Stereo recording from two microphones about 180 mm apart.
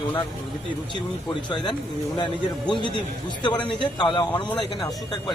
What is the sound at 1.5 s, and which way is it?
A man's voice, 25° left (ahead or behind).